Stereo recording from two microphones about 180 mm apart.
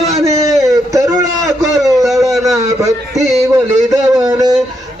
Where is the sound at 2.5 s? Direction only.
20° right (ahead or behind).